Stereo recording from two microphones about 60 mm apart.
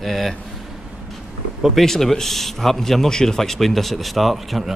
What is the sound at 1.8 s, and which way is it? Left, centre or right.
Speech, centre.